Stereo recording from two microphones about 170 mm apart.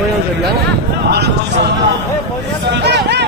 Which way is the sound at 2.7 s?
85° right.